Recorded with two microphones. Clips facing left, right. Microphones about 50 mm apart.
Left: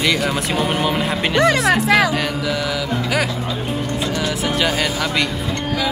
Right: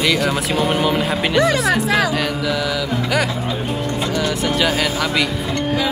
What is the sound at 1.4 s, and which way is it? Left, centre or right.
Speech, left.